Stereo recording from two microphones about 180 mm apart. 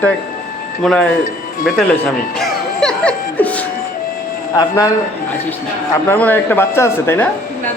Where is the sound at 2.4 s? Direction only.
5° left (ahead or behind).